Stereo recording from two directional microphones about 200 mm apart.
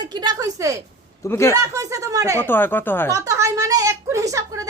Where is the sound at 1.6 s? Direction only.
15° right (ahead or behind).